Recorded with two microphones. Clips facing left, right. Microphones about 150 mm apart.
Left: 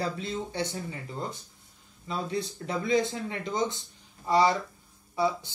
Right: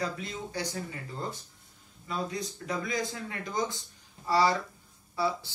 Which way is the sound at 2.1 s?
30° left (ahead or behind).